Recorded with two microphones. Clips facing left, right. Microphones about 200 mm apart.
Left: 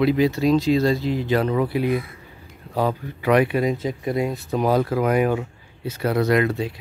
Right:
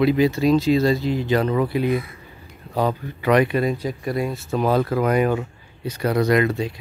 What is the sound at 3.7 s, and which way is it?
Speech, 20° left (ahead or behind).